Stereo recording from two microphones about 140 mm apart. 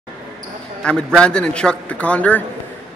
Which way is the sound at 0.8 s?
5° left (ahead or behind).